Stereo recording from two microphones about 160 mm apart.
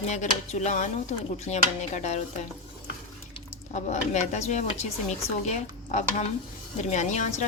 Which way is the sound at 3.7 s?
45° left (ahead or behind).